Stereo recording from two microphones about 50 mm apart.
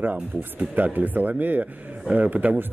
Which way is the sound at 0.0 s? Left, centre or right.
Right.